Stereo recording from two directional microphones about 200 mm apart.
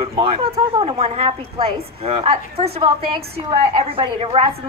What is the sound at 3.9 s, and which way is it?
Speech, 30° right (ahead or behind).